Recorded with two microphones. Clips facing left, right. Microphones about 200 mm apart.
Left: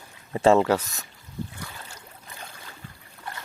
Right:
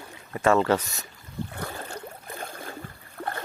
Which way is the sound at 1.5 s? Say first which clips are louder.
Right 7 dB; 55° right (ahead or behind).